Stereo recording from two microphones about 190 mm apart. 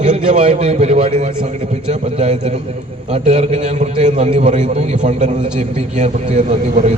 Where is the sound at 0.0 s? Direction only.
35° right (ahead or behind).